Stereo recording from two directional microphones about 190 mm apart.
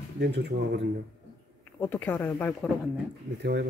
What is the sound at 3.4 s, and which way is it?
Speech, 60° right (ahead or behind).